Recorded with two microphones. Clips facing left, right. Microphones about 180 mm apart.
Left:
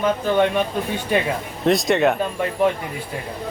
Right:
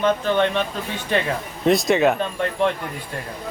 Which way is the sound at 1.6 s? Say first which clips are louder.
Even; centre (ahead or behind).